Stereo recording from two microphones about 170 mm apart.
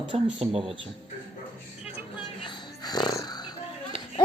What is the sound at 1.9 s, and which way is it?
Music, 35° left (ahead or behind).